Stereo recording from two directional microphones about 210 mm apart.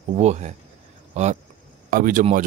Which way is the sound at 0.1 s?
35° right (ahead or behind).